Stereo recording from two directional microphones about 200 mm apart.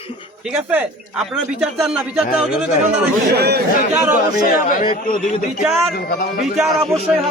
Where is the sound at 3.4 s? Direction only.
55° right (ahead or behind).